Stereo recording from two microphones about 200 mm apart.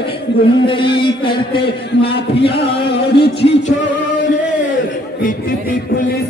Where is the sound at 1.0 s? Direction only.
25° left (ahead or behind).